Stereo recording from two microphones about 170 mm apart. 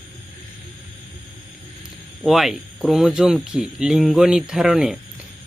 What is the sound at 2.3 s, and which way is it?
Speech, centre (ahead or behind).